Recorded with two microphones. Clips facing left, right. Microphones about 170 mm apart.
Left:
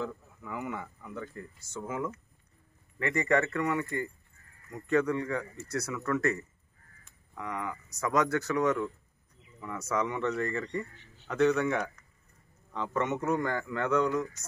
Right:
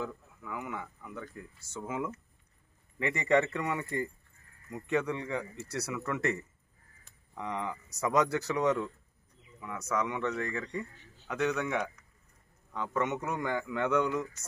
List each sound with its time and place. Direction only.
0.0 s speech: centre (ahead or behind)
1.8 s speech: 15° right (ahead or behind)
7.3 s speech: 25° right (ahead or behind)
8.0 s speech: 15° right (ahead or behind)
9.6 s a man's voice: centre (ahead or behind)